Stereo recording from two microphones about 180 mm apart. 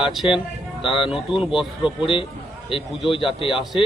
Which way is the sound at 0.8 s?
30° left (ahead or behind).